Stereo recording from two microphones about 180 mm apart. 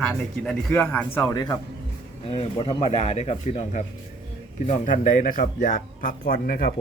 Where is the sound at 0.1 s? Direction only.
5° left (ahead or behind).